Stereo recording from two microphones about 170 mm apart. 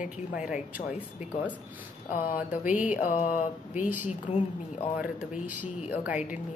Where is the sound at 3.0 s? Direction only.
50° left (ahead or behind).